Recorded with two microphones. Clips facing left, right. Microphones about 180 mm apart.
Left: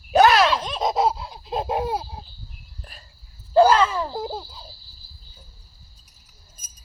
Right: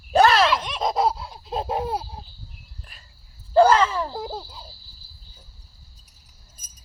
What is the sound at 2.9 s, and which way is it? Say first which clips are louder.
Cricket: left 5 dB; 35° left (ahead or behind).